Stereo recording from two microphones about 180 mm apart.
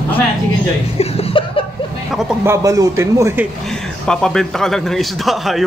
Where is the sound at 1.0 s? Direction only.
35° left (ahead or behind).